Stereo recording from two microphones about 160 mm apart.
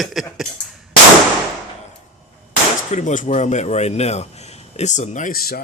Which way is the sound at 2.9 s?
50° left (ahead or behind).